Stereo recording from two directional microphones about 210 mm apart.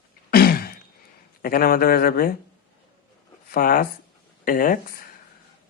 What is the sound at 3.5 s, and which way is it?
Speech, 45° left (ahead or behind).